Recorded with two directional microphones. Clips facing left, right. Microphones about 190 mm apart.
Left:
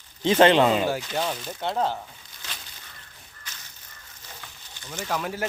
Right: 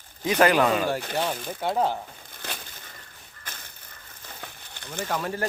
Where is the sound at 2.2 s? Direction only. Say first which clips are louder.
Right 6 dB; 55° right (ahead or behind).